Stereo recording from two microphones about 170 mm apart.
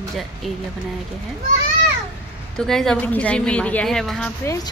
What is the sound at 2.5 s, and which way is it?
A woman's voice, centre (ahead or behind).